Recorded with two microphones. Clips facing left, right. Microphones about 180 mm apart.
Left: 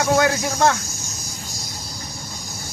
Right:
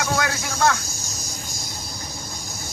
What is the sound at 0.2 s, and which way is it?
Speech, 25° left (ahead or behind).